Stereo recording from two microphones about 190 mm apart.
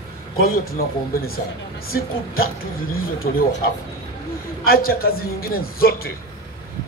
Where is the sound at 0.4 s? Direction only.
50° left (ahead or behind).